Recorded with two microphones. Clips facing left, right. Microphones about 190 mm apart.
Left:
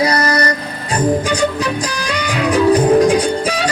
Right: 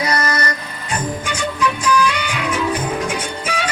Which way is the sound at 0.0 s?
35° left (ahead or behind).